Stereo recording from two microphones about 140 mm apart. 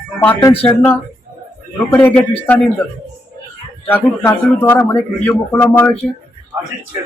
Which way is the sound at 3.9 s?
20° left (ahead or behind).